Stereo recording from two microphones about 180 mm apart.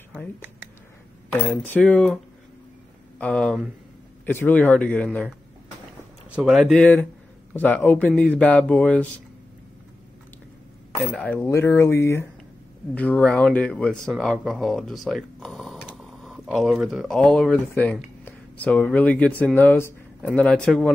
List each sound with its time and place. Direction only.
1.4 s speech: 10° left (ahead or behind)
3.2 s speech: 5° left (ahead or behind)
6.3 s speech: centre (ahead or behind)
11.0 s speech: 10° left (ahead or behind)